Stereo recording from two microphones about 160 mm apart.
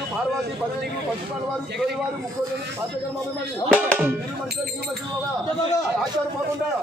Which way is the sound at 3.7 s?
10° right (ahead or behind).